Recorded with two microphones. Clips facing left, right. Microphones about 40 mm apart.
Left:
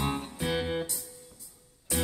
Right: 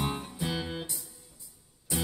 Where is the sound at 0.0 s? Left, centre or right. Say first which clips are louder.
Left 1 dB; left.